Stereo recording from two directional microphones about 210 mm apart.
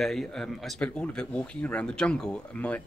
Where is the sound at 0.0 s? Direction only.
Centre (ahead or behind).